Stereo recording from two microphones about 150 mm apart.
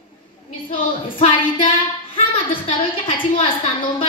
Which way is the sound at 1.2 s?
35° left (ahead or behind).